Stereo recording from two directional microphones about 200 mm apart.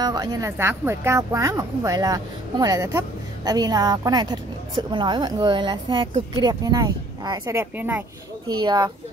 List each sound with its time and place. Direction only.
0.0 s speech: 20° right (ahead or behind)
8.5 s speech: 20° right (ahead or behind)